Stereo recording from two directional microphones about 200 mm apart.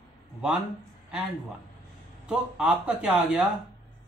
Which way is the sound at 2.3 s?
5° right (ahead or behind).